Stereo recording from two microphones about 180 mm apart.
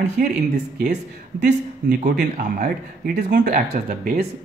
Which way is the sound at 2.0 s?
50° right (ahead or behind).